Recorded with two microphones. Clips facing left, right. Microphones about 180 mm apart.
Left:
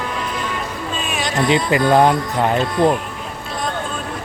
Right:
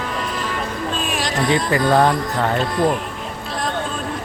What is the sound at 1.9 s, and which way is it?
Speech, 20° left (ahead or behind).